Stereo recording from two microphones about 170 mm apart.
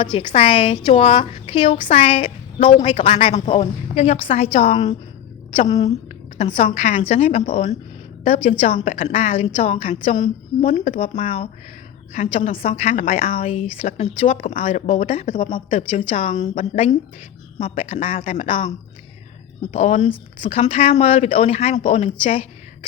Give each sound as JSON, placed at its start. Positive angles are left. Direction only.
{"t": 0.0, "sound": "a woman's voice", "side_deg": 30}
{"t": 5.6, "sound": "a woman's voice", "side_deg": 20}
{"t": 5.9, "sound": "a woman's voice", "side_deg": 35}
{"t": 19.7, "sound": "a woman's voice", "side_deg": 45}